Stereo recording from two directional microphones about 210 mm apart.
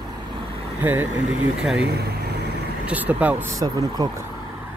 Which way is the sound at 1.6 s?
5° right (ahead or behind).